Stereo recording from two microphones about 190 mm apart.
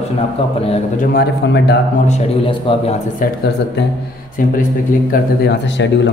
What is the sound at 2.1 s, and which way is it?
Speech, 30° left (ahead or behind).